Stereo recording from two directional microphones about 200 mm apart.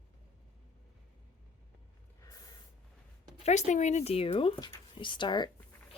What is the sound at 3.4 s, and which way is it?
Speech, 35° left (ahead or behind).